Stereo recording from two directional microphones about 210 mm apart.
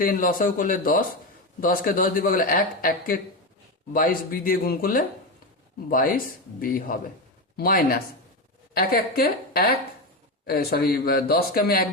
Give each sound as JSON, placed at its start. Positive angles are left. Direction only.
{"t": 0.0, "sound": "a man's voice", "side_deg": 40}